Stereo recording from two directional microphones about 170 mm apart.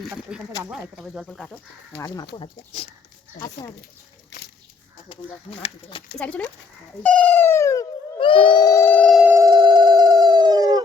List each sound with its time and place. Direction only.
0.1 s speech: 5° right (ahead or behind)
2.0 s speech: 20° left (ahead or behind)
5.0 s speech: 35° left (ahead or behind)
6.1 s dog: 5° left (ahead or behind)
8.2 s a sound: 30° left (ahead or behind); by 9.1 s 10° left (ahead or behind)
9.1 s a sound: 10° right (ahead or behind)